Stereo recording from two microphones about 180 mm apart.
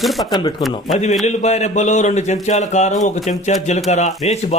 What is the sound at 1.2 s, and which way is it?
A man's voice, 40° left (ahead or behind).